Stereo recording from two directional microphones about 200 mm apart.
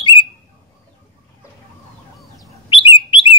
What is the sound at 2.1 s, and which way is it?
Chicken, centre (ahead or behind).